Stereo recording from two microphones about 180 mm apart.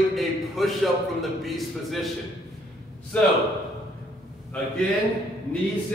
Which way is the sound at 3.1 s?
10° left (ahead or behind).